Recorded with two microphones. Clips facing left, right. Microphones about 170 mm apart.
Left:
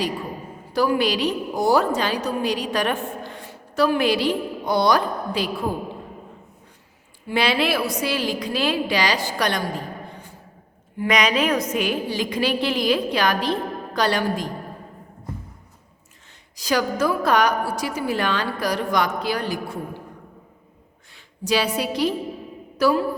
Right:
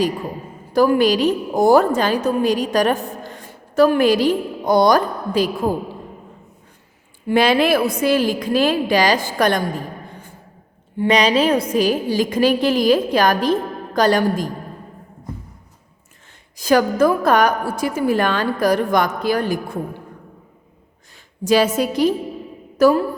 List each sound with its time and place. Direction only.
0.7 s a woman's voice: 50° right (ahead or behind)
7.3 s a woman's voice: 50° right (ahead or behind)
10.9 s a woman's voice: 30° right (ahead or behind); by 14.5 s 45° right (ahead or behind)
16.6 s a woman's voice: 50° right (ahead or behind)
21.4 s a woman's voice: 45° right (ahead or behind)